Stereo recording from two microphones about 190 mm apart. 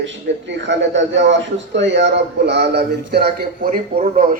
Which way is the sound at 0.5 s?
70° right (ahead or behind).